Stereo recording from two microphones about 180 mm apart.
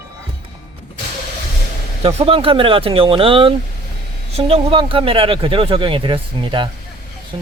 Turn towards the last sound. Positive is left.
turn(degrees=-25)  # may be behind; listen again after turning